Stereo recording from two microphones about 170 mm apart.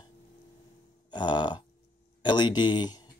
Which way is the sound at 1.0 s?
25° left (ahead or behind).